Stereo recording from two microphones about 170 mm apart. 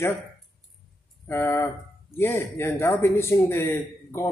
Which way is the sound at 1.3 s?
15° left (ahead or behind).